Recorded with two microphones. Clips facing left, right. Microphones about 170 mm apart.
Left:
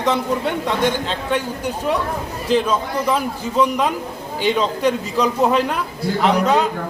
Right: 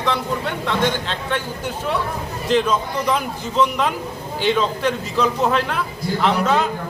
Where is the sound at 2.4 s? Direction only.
10° left (ahead or behind).